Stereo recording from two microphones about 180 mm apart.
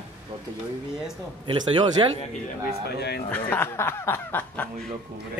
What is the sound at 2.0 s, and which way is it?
Speech, 30° right (ahead or behind).